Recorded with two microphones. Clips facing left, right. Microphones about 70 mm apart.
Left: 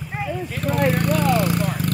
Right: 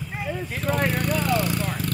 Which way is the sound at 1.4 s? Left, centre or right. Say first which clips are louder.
Left 4 dB; left.